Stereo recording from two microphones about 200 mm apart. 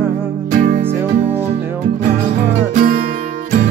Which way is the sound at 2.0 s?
40° right (ahead or behind).